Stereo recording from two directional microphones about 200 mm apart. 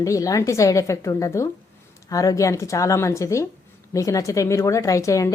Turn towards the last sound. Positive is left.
turn(degrees=15)  # may be behind; listen again after turning